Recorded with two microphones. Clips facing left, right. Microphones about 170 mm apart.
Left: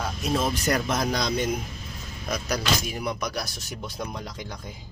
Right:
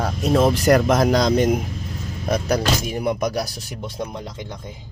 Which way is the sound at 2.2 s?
55° right (ahead or behind).